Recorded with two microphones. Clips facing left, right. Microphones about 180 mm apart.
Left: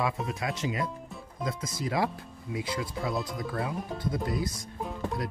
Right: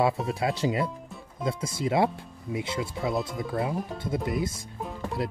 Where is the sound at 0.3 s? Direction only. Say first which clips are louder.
Right 5 dB; 30° right (ahead or behind).